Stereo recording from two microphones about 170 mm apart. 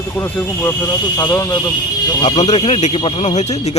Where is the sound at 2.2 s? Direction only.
40° left (ahead or behind).